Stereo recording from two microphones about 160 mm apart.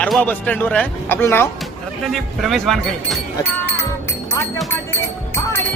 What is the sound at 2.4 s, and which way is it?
Speech, centre (ahead or behind).